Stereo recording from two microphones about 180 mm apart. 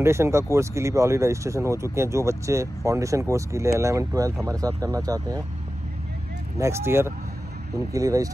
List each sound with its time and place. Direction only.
0.0 s speech: 15° right (ahead or behind)
6.6 s speech: 15° right (ahead or behind)